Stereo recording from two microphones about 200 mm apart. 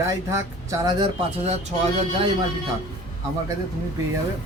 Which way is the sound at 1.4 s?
35° right (ahead or behind).